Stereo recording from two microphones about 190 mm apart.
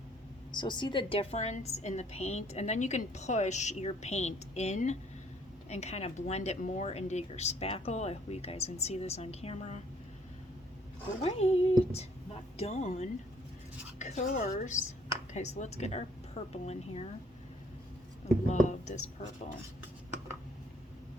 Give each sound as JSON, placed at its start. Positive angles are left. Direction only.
{"t": 0.5, "sound": "a woman's voice", "side_deg": 25}
{"t": 11.2, "sound": "a woman's voice", "side_deg": 35}
{"t": 18.4, "sound": "a woman's voice", "side_deg": 40}